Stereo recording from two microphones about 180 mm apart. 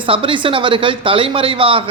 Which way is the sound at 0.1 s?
30° right (ahead or behind).